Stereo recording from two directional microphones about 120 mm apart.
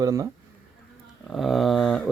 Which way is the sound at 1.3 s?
Centre (ahead or behind).